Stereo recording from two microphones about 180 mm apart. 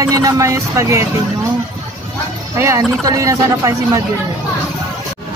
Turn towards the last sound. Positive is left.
turn(degrees=-20)  # may be behind; listen again after turning